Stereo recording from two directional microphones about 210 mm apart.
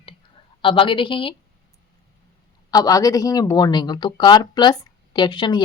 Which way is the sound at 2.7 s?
15° left (ahead or behind).